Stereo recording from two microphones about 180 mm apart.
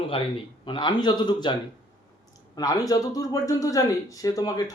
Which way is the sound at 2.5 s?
20° left (ahead or behind).